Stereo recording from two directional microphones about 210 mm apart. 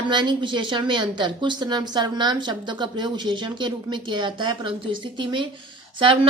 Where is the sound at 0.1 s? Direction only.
20° right (ahead or behind).